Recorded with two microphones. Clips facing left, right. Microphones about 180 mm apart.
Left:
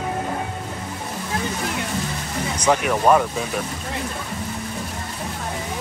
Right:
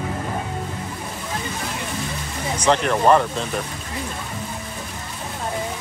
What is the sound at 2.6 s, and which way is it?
Speech, 10° left (ahead or behind).